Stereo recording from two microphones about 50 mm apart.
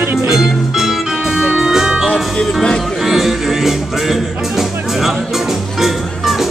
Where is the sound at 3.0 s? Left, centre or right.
Centre.